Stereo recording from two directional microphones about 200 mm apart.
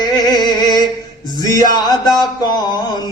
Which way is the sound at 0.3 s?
20° left (ahead or behind).